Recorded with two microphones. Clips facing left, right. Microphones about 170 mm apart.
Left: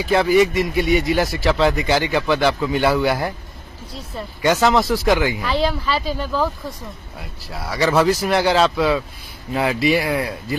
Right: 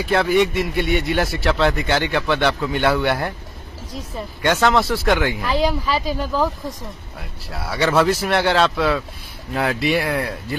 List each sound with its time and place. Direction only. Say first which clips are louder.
0.0 s a man's voice: left 2 dB; centre (ahead or behind)
4.4 s a man's voice: left 1 dB; centre (ahead or behind)